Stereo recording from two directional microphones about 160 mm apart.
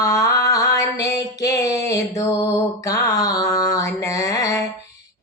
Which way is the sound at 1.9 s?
20° left (ahead or behind).